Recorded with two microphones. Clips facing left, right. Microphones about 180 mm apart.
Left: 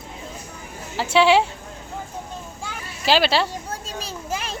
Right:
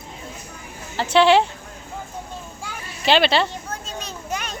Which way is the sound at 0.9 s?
5° left (ahead or behind).